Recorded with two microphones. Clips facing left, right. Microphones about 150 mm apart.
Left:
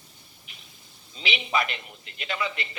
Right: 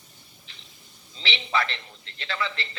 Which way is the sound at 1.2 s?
15° left (ahead or behind).